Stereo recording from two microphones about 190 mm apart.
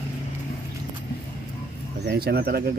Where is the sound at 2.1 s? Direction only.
55° right (ahead or behind).